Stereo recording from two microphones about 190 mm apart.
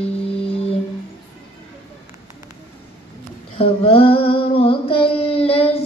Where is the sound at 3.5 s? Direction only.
30° left (ahead or behind).